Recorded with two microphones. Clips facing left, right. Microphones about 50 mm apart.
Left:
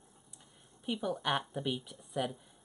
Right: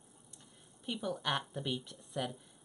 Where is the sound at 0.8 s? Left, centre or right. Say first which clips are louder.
Left 3 dB; centre.